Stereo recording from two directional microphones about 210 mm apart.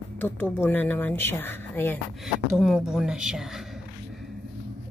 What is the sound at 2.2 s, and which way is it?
A woman's voice, centre (ahead or behind).